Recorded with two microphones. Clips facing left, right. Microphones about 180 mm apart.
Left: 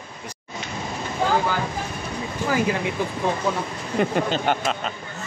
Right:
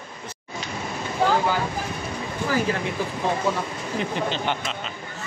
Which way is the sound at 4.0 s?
45° left (ahead or behind).